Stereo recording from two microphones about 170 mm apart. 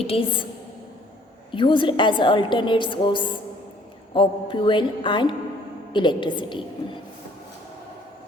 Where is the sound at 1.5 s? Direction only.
30° left (ahead or behind).